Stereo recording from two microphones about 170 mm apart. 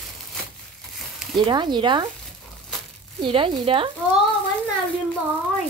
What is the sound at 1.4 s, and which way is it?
Speech, 25° right (ahead or behind).